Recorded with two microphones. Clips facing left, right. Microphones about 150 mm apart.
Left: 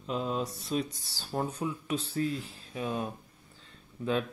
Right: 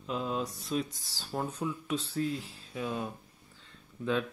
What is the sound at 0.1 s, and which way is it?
Speech, centre (ahead or behind).